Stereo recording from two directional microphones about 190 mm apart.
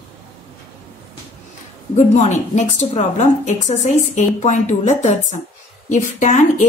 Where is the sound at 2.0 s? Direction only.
40° left (ahead or behind).